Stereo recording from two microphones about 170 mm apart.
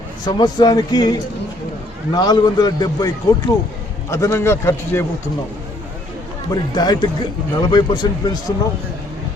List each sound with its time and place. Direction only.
0.3 s a man's voice: 25° left (ahead or behind)
2.1 s a man's voice: 25° left (ahead or behind)
6.5 s a man's voice: 25° left (ahead or behind)